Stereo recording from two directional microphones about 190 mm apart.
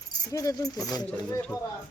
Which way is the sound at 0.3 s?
15° left (ahead or behind).